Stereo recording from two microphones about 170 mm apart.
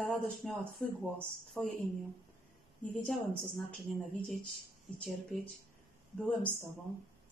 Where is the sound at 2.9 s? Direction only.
5° left (ahead or behind).